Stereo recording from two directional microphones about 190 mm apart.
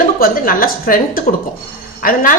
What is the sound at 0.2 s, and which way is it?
A woman's voice, 50° left (ahead or behind).